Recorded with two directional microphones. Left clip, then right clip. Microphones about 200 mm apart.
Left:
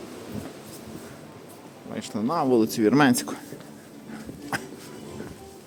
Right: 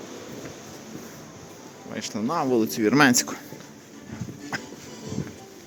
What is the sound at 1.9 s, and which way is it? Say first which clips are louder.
Speech: even; 10° left (ahead or behind).